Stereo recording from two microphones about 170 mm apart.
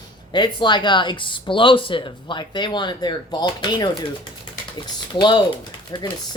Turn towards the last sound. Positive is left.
turn(degrees=25)  # may be behind; listen again after turning